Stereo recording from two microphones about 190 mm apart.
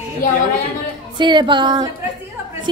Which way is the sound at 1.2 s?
25° right (ahead or behind).